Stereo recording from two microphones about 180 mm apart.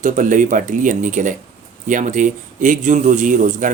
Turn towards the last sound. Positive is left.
turn(degrees=-45)  # may be behind; listen again after turning